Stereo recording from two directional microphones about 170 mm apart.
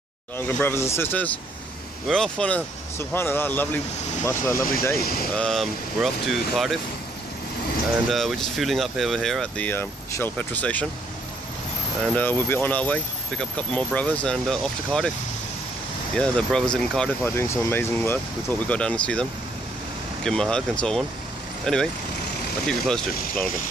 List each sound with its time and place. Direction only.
0.4 s speech: 10° left (ahead or behind)
5.3 s speech: 5° left (ahead or behind)
8.1 s speech: centre (ahead or behind)
12.0 s speech: 10° left (ahead or behind)
16.2 s speech: 5° left (ahead or behind)
20.2 s speech: 5° left (ahead or behind)